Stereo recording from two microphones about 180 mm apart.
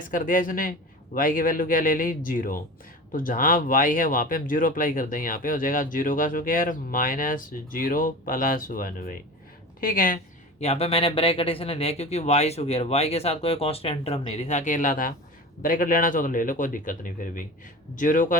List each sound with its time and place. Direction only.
0.1 s speech: 50° left (ahead or behind)
10.6 s speech: 35° left (ahead or behind)